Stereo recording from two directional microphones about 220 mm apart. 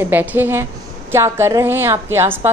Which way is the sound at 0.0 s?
10° right (ahead or behind).